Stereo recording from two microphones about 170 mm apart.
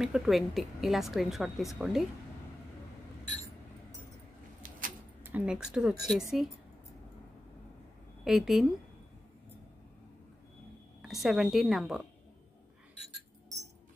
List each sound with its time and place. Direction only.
0.0 s a woman's voice: centre (ahead or behind)
4.6 s a sound: 50° right (ahead or behind)
5.2 s a woman's voice: 10° right (ahead or behind)
8.2 s a woman's voice: centre (ahead or behind)
11.0 s a woman's voice: centre (ahead or behind)